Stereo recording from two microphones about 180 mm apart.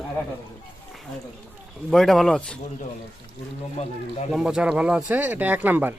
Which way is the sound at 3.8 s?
35° left (ahead or behind).